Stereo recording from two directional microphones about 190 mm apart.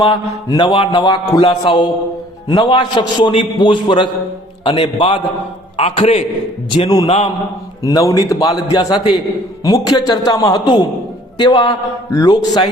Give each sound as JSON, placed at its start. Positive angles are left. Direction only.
{"t": 0.0, "sound": "mantra", "side_deg": 25}
{"t": 5.7, "sound": "a man's voice", "side_deg": 30}
{"t": 6.7, "sound": "mantra", "side_deg": 25}
{"t": 7.9, "sound": "speech", "side_deg": 15}
{"t": 8.3, "sound": "mantra", "side_deg": 20}